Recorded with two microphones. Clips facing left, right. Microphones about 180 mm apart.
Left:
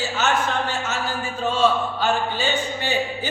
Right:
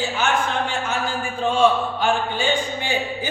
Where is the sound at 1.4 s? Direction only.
15° right (ahead or behind).